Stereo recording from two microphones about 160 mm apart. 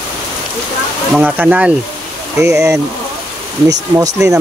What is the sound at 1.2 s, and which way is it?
Speech, 10° right (ahead or behind).